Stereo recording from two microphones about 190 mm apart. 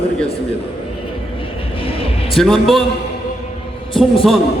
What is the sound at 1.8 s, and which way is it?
Music, 30° left (ahead or behind).